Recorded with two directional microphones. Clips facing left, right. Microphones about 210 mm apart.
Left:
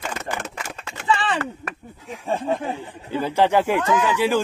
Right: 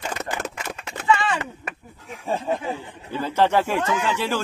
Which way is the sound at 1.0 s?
35° left (ahead or behind).